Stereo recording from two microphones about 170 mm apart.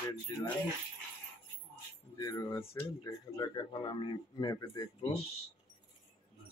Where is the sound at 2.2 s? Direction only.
20° left (ahead or behind).